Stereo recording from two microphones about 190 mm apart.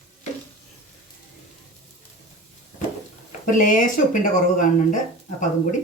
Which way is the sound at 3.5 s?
45° left (ahead or behind).